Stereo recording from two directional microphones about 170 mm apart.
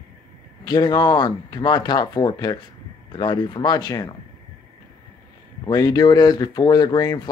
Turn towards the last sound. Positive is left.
turn(degrees=25)  # may be behind; listen again after turning